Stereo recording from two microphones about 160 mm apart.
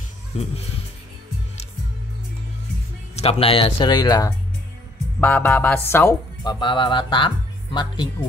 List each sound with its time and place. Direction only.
3.2 s speech: 35° left (ahead or behind)
5.2 s speech: 10° left (ahead or behind)
6.4 s speech: 25° left (ahead or behind)